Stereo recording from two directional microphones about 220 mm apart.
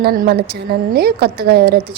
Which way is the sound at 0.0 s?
45° right (ahead or behind).